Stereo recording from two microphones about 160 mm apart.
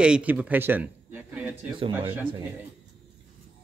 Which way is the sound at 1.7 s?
30° right (ahead or behind).